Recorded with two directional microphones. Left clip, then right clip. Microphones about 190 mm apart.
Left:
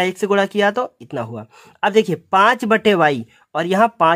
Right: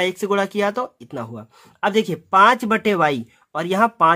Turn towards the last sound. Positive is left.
turn(degrees=20)  # may be behind; listen again after turning